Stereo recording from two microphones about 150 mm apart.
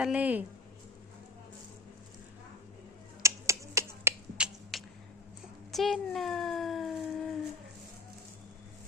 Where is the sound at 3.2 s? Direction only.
20° right (ahead or behind).